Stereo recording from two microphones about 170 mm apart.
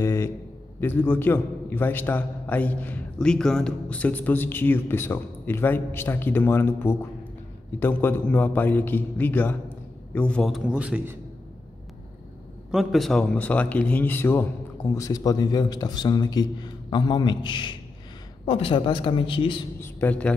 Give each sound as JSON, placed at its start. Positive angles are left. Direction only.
{"t": 0.0, "sound": "a sound", "side_deg": 15}
{"t": 0.7, "sound": "a man's voice", "side_deg": 10}
{"t": 12.7, "sound": "a man's voice", "side_deg": 0}
{"t": 19.8, "sound": "a man's voice", "side_deg": 10}